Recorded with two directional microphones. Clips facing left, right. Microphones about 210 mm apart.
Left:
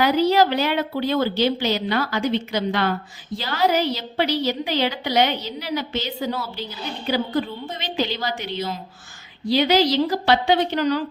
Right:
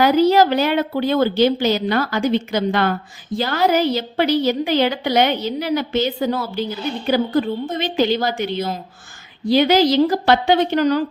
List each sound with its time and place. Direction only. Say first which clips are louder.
0.0 s a woman's voice: right 4 dB; 45° right (ahead or behind)